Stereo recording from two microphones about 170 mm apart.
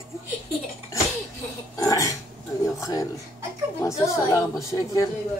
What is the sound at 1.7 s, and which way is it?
Speech, 20° left (ahead or behind).